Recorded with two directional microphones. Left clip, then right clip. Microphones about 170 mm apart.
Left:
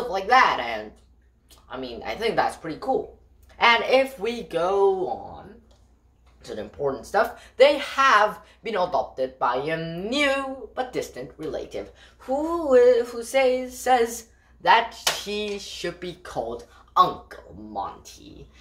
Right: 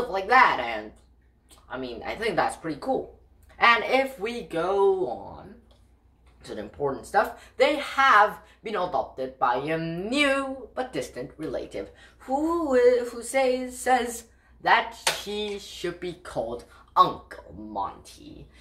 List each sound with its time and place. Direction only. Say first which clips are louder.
0.1 s speech: left 1 dB; 5° left (ahead or behind)
3.5 s speech: left 2 dB; 15° left (ahead or behind)
6.4 s speech: left 2 dB; 10° left (ahead or behind)
15.2 s speech: left 2 dB; 15° left (ahead or behind); by 18.1 s centre (ahead or behind)